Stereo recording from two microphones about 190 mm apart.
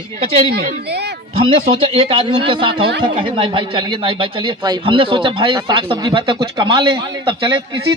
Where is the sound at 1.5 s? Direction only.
30° right (ahead or behind).